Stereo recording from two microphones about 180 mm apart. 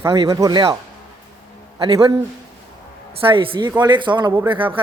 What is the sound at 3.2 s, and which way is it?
Speech, 30° right (ahead or behind).